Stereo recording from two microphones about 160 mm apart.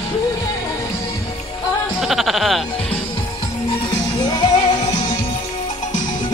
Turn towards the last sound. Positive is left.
turn(degrees=25)  # may be behind; listen again after turning